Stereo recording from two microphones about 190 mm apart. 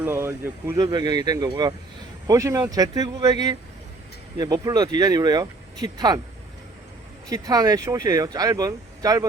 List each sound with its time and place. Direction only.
0.0 s speech: 10° right (ahead or behind)
7.4 s speech: 20° right (ahead or behind)